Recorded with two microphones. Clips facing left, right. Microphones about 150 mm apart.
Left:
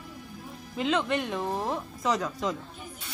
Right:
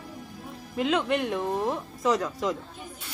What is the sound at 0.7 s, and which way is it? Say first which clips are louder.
Speech: right 2 dB; 5° right (ahead or behind).